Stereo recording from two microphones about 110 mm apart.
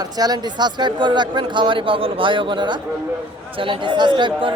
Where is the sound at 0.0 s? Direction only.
35° right (ahead or behind).